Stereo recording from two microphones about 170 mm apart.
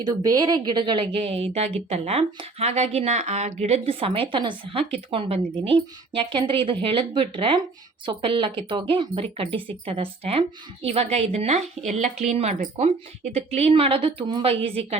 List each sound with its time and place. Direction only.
0.1 s a woman's voice: 20° right (ahead or behind)